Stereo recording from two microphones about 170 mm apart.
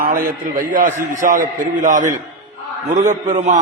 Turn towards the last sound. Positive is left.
turn(degrees=-45)  # may be behind; listen again after turning